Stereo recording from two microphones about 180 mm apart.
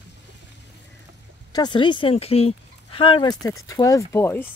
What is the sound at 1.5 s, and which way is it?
Speech, 25° left (ahead or behind).